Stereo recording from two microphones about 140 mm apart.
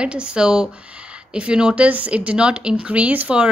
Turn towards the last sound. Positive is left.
turn(degrees=-10)  # may be behind; listen again after turning